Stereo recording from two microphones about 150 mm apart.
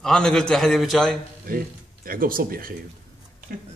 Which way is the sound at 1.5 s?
70° right (ahead or behind).